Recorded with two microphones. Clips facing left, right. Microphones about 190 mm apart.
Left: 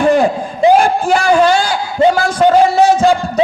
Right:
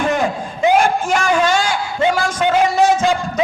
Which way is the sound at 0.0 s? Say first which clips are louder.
Left 7 dB; 35° left (ahead or behind).